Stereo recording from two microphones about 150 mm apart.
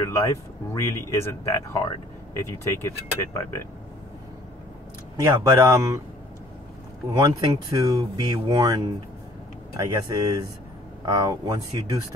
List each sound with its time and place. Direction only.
0.0 s speech: 20° left (ahead or behind)
5.1 s speech: 25° right (ahead or behind)
7.1 s speech: 25° right (ahead or behind)